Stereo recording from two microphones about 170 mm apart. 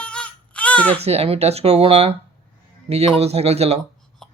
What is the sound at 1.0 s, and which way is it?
Speech, 35° right (ahead or behind).